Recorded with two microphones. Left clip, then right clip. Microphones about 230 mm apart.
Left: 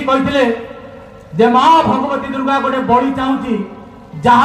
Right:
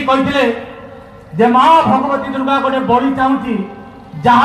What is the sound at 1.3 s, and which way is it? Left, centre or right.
Speech, left.